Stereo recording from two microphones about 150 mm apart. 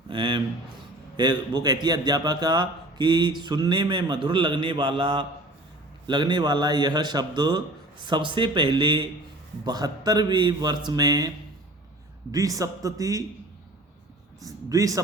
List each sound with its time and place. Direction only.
0.1 s a sound: 30° right (ahead or behind)
1.1 s a man's voice: 30° right (ahead or behind)
12.3 s a man's voice: 25° right (ahead or behind)
14.4 s a man's voice: 20° right (ahead or behind)